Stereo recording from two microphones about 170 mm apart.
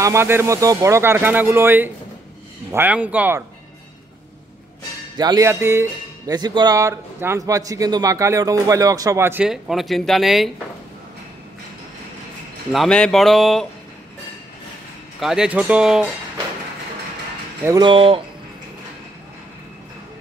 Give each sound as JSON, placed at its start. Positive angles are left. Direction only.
{"t": 0.0, "sound": "speech", "side_deg": -15}
{"t": 5.1, "sound": "speech", "side_deg": -25}
{"t": 12.7, "sound": "speech", "side_deg": 5}
{"t": 15.1, "sound": "speech", "side_deg": -5}
{"t": 17.6, "sound": "speech", "side_deg": -25}